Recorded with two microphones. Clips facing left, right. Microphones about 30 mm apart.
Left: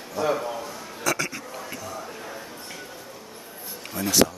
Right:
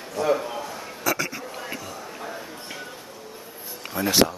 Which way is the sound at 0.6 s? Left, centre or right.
Centre.